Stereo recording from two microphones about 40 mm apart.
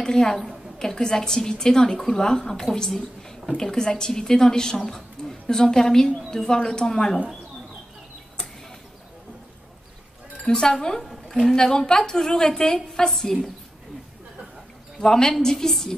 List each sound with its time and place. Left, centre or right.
0.0 s a woman's voice: centre
10.4 s speech: centre
11.0 s a sound: centre
11.5 s a woman's voice: centre
15.0 s a woman's voice: centre